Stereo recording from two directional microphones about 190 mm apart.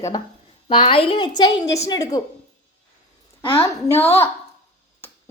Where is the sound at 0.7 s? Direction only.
25° left (ahead or behind).